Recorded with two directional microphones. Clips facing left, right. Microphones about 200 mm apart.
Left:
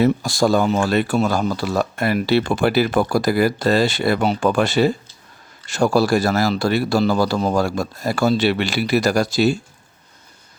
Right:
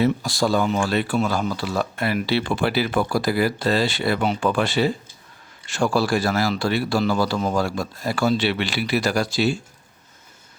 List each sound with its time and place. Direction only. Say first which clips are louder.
0.0 s speech: left 4 dB; 45° left (ahead or behind)